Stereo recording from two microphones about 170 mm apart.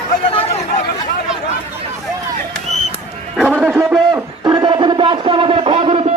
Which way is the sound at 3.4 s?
5° right (ahead or behind).